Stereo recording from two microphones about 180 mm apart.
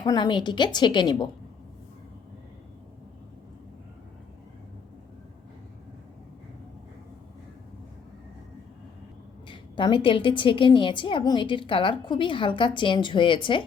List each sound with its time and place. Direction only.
0.0 s a woman's voice: 25° left (ahead or behind)
9.5 s a woman's voice: 25° left (ahead or behind)